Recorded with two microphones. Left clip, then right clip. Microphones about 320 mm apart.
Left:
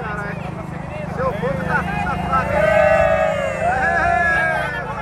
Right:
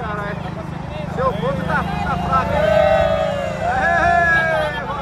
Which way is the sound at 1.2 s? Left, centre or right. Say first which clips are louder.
Right 2 dB; right.